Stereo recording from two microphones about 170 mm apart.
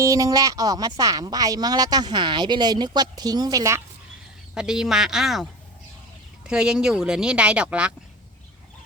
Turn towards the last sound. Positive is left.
turn(degrees=-5)  # may be behind; listen again after turning